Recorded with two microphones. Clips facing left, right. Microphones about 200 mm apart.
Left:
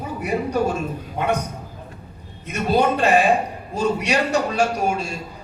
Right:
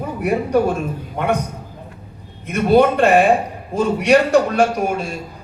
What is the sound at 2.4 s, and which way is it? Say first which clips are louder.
A man's voice: right 6 dB; 55° right (ahead or behind).